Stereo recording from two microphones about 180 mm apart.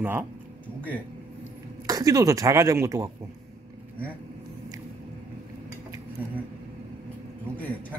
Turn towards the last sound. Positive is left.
turn(degrees=10)  # may be behind; listen again after turning